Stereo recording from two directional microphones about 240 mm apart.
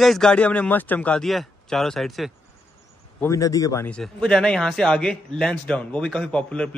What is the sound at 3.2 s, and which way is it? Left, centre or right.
A man's voice, centre.